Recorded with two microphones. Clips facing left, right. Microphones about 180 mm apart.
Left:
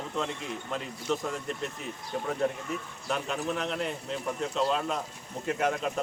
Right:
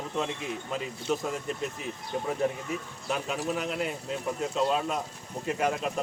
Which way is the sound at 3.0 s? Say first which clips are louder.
Even; 5° right (ahead or behind).